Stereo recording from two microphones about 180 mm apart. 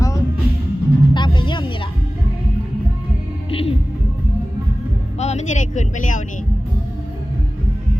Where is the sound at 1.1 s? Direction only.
25° left (ahead or behind).